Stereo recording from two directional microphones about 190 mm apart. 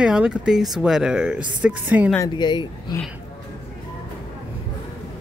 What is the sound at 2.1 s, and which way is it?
Speech, 20° left (ahead or behind).